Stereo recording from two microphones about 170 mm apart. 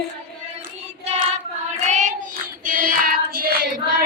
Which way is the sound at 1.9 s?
45° right (ahead or behind).